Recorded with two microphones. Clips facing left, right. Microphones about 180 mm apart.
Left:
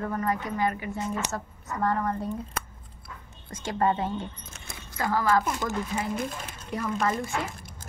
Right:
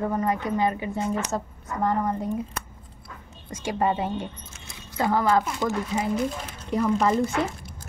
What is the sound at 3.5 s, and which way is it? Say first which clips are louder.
A woman's voice: right 1 dB; 10° right (ahead or behind).